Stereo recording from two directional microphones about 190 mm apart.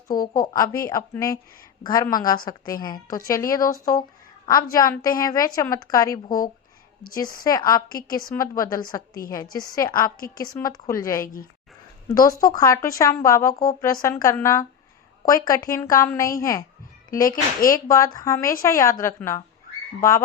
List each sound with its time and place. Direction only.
0.1 s a woman's voice: 20° left (ahead or behind)
9.2 s a woman's voice: 45° left (ahead or behind)
9.6 s speech: 20° left (ahead or behind)
10.2 s a woman's voice: 50° left (ahead or behind)
10.4 s a woman's voice: 20° left (ahead or behind)
17.6 s a woman's voice: 50° left (ahead or behind)
17.8 s a woman's voice: 15° left (ahead or behind)